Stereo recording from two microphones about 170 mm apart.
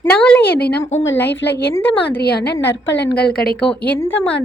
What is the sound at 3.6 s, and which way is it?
Speech, 5° left (ahead or behind).